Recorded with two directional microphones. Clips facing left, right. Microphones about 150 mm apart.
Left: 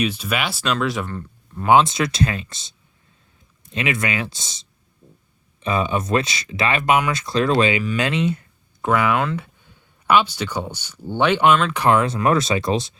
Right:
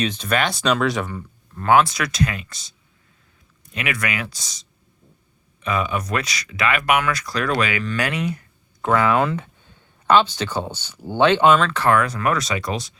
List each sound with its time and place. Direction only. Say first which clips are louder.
0.0 s speech: right 1 dB; 10° left (ahead or behind)
1.7 s speech: left 1 dB; 25° left (ahead or behind)
8.8 s speech: right 1 dB; 15° left (ahead or behind)